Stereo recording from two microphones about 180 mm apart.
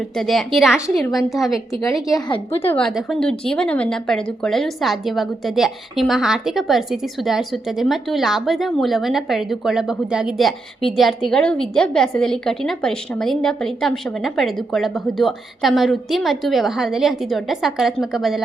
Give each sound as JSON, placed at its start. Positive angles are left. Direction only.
{"t": 0.2, "sound": "speech", "side_deg": 0}
{"t": 2.1, "sound": "a woman's voice", "side_deg": 30}
{"t": 2.6, "sound": "speech", "side_deg": 5}